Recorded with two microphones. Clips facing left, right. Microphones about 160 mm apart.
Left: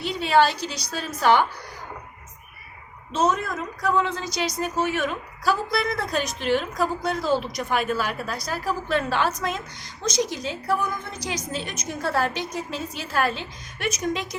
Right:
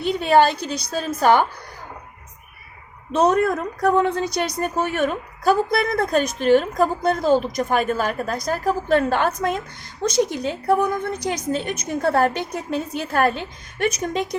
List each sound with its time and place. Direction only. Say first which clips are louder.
0.0 s a woman's voice: right 4 dB; 50° right (ahead or behind)
3.1 s a woman's voice: right 6 dB; 60° right (ahead or behind)